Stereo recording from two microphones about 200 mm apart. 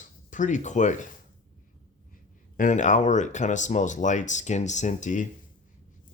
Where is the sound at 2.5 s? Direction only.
40° left (ahead or behind).